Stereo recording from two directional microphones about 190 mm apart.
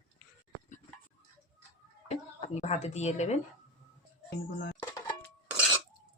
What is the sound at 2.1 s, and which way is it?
Speech, 35° left (ahead or behind).